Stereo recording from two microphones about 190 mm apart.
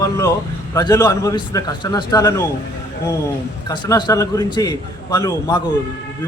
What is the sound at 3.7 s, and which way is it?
A man's voice, 25° left (ahead or behind).